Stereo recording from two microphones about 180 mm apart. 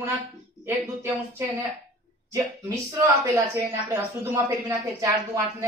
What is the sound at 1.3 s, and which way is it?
Speech, 20° right (ahead or behind).